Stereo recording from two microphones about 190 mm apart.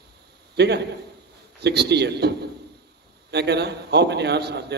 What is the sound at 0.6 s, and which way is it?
A man's voice, 60° right (ahead or behind).